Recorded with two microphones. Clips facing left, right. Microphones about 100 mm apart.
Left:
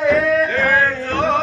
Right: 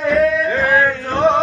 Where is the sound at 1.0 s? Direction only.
20° right (ahead or behind).